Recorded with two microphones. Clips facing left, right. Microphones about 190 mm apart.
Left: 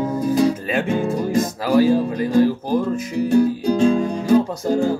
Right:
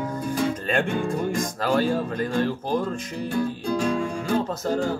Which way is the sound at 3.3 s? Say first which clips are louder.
Left 9 dB; 35° left (ahead or behind).